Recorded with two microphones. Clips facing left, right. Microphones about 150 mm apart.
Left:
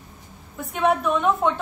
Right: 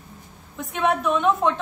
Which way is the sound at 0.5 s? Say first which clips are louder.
Left 1 dB; centre (ahead or behind).